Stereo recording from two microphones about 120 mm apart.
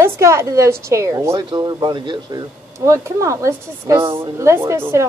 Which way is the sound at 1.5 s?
40° right (ahead or behind).